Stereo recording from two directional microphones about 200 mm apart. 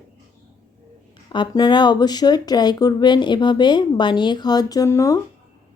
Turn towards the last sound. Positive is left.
turn(degrees=15)  # may be behind; listen again after turning